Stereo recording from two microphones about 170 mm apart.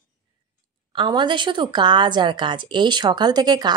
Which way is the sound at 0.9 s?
25° right (ahead or behind).